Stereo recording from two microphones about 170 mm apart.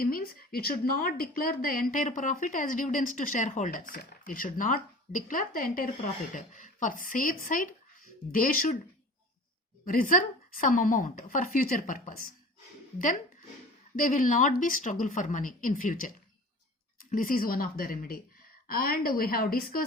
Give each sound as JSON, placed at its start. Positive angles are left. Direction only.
{"t": 0.0, "sound": "a woman's voice", "side_deg": 60}
{"t": 9.8, "sound": "a woman's voice", "side_deg": 55}
{"t": 13.9, "sound": "a woman's voice", "side_deg": 50}